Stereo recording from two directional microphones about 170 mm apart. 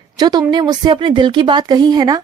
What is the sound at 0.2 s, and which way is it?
A woman's voice, 25° right (ahead or behind).